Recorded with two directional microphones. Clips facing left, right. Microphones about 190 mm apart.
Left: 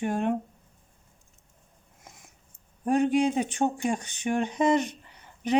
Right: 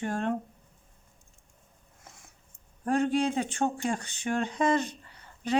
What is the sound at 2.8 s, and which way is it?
Speech, 15° left (ahead or behind).